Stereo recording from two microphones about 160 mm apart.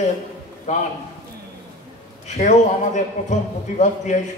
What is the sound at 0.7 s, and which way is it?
Speech, 50° left (ahead or behind).